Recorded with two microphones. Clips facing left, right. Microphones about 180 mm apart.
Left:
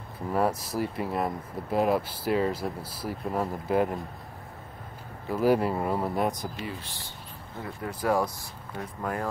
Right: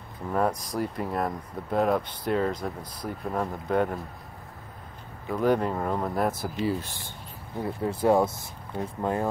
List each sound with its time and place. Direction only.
0.3 s speech: 5° left (ahead or behind)
5.3 s speech: 5° left (ahead or behind)
7.6 s speech: 25° right (ahead or behind)